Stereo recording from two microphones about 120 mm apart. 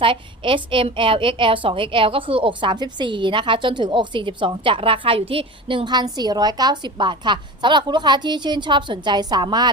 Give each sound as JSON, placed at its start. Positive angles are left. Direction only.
{"t": 0.0, "sound": "a woman's voice", "side_deg": -45}